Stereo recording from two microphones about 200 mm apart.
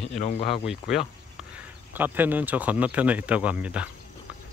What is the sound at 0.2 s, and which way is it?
Speech, 40° left (ahead or behind).